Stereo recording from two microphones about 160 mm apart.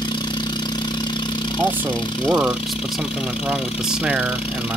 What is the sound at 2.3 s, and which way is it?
Speech, 5° right (ahead or behind).